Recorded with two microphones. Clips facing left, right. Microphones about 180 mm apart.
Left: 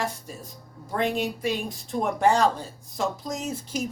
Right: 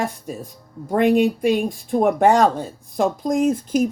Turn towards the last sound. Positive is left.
turn(degrees=-50)  # may be behind; listen again after turning